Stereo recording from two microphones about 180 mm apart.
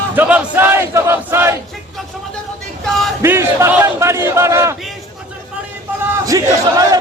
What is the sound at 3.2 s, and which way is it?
Speech, 15° right (ahead or behind).